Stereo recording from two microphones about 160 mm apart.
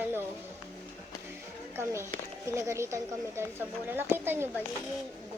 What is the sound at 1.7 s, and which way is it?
Speech, 15° right (ahead or behind).